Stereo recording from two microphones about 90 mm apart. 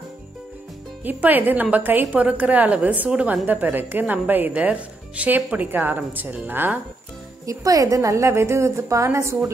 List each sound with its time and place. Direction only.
1.0 s a woman's voice: 20° right (ahead or behind)
7.4 s a woman's voice: 40° right (ahead or behind)